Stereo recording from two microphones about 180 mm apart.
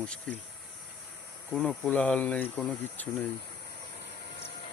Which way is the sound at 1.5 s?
5° left (ahead or behind).